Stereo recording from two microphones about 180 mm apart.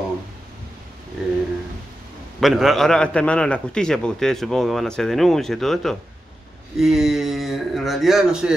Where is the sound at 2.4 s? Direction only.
Centre (ahead or behind).